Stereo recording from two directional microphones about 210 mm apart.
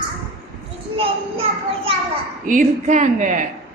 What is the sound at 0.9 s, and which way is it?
Child singing, 25° right (ahead or behind).